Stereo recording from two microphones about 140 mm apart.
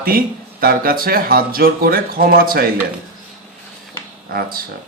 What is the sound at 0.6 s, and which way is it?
Speech, 90° right.